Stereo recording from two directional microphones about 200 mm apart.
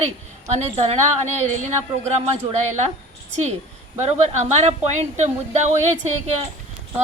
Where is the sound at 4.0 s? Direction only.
35° right (ahead or behind).